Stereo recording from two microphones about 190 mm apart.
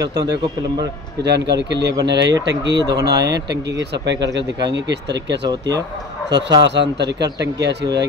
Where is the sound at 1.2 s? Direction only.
65° right (ahead or behind).